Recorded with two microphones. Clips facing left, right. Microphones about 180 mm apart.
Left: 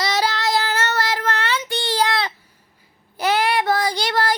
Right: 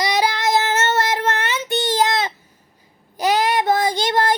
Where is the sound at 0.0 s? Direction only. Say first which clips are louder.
Right 2 dB; 15° right (ahead or behind).